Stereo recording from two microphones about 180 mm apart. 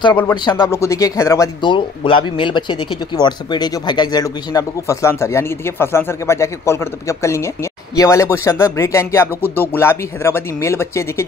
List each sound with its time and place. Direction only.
0.3 s speech: 20° left (ahead or behind)